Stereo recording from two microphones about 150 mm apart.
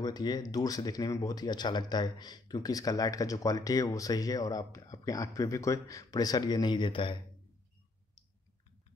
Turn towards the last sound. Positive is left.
turn(degrees=35)  # may be behind; listen again after turning